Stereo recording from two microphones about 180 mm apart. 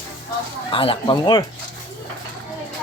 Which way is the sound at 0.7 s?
30° left (ahead or behind).